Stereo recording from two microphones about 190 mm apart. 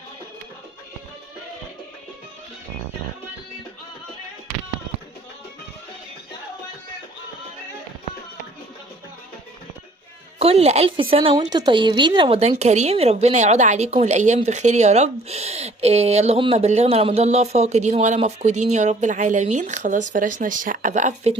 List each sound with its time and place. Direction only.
10.3 s speech: 30° right (ahead or behind)